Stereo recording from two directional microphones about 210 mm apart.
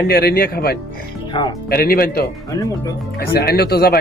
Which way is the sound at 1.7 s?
45° left (ahead or behind).